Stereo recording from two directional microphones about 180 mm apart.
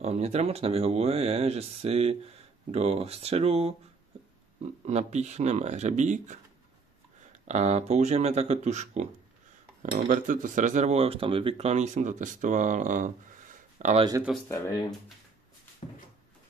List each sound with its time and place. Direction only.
0.0 s speech: 35° right (ahead or behind)
4.8 s speech: 40° right (ahead or behind)
7.4 s speech: 40° right (ahead or behind)
14.5 s speech: 20° left (ahead or behind)